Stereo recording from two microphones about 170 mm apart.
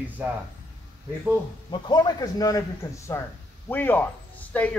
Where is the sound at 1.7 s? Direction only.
25° left (ahead or behind).